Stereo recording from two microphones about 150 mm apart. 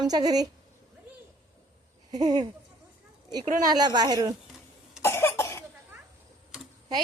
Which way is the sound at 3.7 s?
30° right (ahead or behind).